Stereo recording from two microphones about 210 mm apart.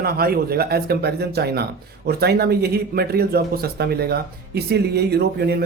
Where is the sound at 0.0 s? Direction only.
45° right (ahead or behind).